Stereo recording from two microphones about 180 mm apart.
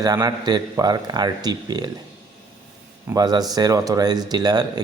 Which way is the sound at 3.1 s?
20° right (ahead or behind).